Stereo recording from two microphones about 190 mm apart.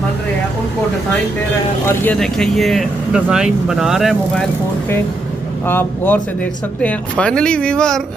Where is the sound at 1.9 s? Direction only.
5° left (ahead or behind).